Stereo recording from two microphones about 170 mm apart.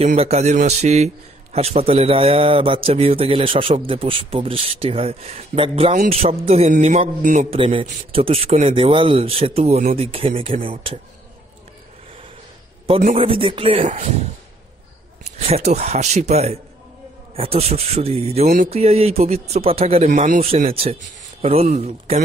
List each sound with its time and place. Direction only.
0.0 s a man's voice: 40° right (ahead or behind)
7.5 s a man's voice: 30° right (ahead or behind)
13.2 s a man's voice: 35° right (ahead or behind)
15.2 s a man's voice: 40° right (ahead or behind)
20.7 s a man's voice: 35° right (ahead or behind)